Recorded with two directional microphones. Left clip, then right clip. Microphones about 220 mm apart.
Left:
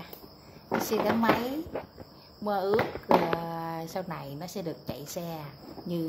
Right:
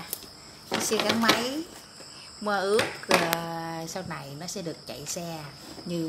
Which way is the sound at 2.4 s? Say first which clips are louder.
Right 2 dB; centre (ahead or behind).